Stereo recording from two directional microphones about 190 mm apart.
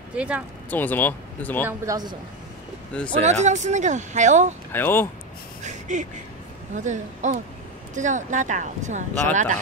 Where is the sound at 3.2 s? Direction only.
40° right (ahead or behind).